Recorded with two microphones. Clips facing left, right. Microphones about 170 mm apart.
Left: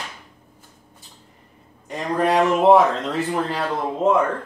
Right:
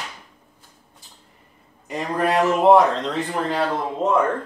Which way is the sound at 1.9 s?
Centre (ahead or behind).